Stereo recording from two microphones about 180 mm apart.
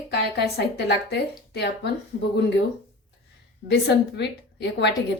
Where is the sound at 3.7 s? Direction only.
70° left (ahead or behind).